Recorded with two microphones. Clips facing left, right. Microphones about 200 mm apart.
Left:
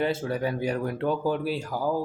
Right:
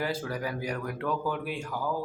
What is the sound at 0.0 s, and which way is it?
Speech, 25° left (ahead or behind).